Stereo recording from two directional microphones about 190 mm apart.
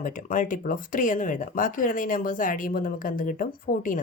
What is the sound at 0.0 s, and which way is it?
A woman's voice, 45° left (ahead or behind).